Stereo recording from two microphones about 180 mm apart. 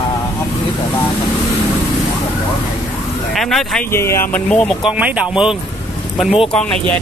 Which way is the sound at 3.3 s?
Centre (ahead or behind).